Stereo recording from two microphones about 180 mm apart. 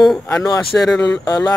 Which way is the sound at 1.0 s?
20° left (ahead or behind).